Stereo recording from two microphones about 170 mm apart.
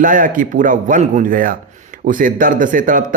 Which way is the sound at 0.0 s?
55° right (ahead or behind).